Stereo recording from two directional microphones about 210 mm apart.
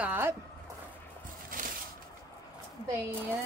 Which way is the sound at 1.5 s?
40° right (ahead or behind).